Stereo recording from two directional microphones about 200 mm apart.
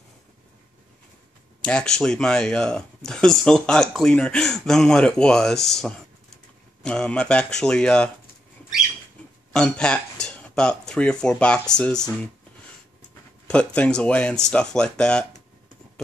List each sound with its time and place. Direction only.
1.6 s speech: 5° left (ahead or behind)
9.5 s speech: 5° left (ahead or behind)
13.5 s speech: 5° left (ahead or behind)